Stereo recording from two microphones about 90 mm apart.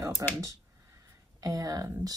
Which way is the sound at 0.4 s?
35° right (ahead or behind).